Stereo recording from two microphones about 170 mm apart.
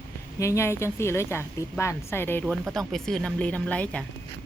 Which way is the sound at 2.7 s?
Centre (ahead or behind).